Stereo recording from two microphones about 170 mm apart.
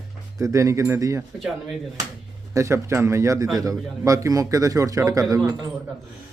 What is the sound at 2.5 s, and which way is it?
A man's voice, 15° right (ahead or behind).